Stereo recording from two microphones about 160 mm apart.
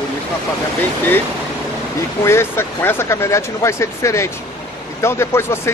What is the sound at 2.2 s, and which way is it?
Speech, 15° left (ahead or behind).